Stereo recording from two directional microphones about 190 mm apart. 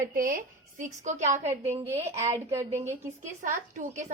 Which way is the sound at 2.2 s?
15° right (ahead or behind).